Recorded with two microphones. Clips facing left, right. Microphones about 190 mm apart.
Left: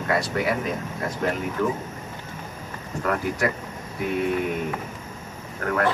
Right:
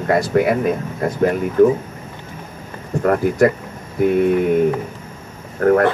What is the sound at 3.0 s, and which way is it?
Speech, 45° right (ahead or behind).